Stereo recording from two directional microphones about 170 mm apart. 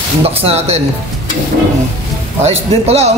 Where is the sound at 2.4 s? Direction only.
40° right (ahead or behind).